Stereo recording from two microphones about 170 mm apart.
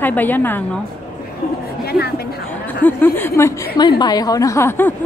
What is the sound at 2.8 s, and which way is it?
A woman's voice, 10° left (ahead or behind).